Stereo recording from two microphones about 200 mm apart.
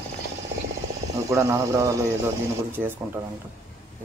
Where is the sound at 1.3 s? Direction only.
15° right (ahead or behind).